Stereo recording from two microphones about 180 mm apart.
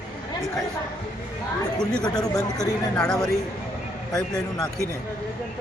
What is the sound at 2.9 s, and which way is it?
Speech, 5° left (ahead or behind).